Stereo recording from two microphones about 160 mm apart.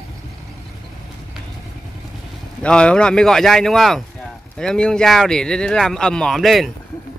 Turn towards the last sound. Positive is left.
turn(degrees=0)  # may be behind; listen again after turning